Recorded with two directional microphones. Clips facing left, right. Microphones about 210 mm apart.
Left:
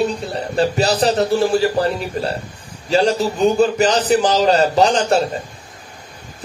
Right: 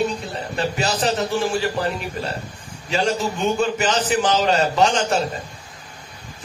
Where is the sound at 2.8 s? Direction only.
35° left (ahead or behind).